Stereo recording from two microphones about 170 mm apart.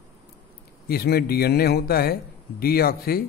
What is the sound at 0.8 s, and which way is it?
A man's voice, 65° left (ahead or behind).